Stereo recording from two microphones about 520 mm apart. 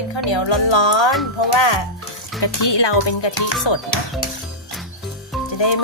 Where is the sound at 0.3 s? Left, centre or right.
Left.